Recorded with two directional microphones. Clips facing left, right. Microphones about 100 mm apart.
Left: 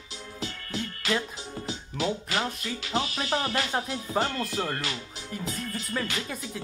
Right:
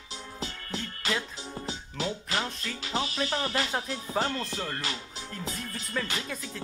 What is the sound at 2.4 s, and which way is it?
Speech, 10° left (ahead or behind).